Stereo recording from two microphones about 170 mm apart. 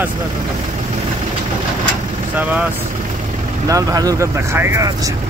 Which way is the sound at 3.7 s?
20° right (ahead or behind).